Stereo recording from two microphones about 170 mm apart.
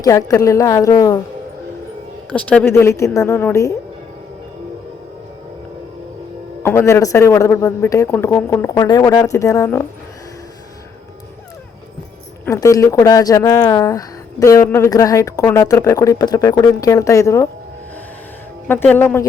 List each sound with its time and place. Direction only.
0.0 s speech: 20° left (ahead or behind)
2.3 s a man's voice: 10° left (ahead or behind)
6.6 s a man's voice: 15° left (ahead or behind)
12.5 s speech: 20° left (ahead or behind)
18.7 s a man's voice: 10° left (ahead or behind)